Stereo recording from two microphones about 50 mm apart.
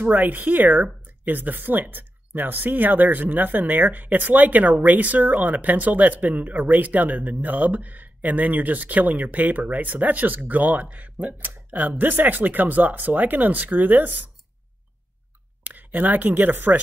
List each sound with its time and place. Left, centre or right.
0.0 s speech: right
15.6 s speech: right